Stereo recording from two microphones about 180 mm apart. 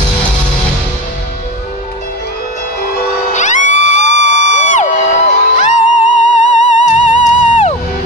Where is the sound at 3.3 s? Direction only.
40° left (ahead or behind).